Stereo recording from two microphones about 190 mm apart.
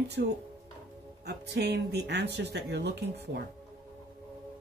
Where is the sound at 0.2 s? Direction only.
60° right (ahead or behind).